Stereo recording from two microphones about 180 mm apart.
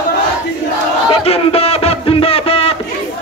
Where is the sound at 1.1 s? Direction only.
35° left (ahead or behind).